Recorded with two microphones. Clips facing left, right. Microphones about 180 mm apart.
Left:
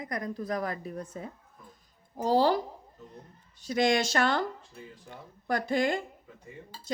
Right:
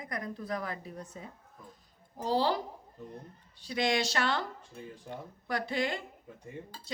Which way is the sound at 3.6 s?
45° left (ahead or behind).